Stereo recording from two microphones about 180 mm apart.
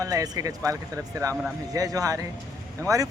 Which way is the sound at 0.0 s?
20° right (ahead or behind).